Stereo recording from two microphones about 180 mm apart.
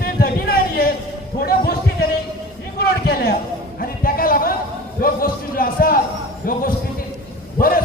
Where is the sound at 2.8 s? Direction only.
60° left (ahead or behind).